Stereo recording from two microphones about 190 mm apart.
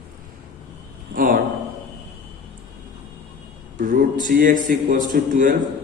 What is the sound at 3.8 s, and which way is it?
A man's voice, 45° right (ahead or behind).